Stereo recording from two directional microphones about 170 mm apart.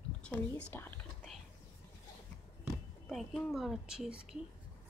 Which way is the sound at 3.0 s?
Centre (ahead or behind).